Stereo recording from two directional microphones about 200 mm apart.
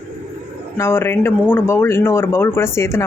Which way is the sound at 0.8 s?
10° left (ahead or behind).